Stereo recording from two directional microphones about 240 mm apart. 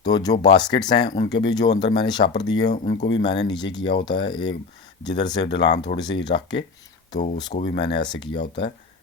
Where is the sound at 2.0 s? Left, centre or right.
Centre.